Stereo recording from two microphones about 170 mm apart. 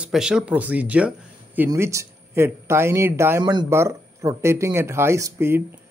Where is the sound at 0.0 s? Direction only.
5° right (ahead or behind).